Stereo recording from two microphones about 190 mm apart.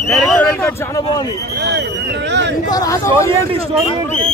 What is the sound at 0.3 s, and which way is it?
Speech, 5° left (ahead or behind).